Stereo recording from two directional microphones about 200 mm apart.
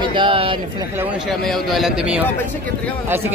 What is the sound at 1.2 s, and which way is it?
A man's voice, centre (ahead or behind).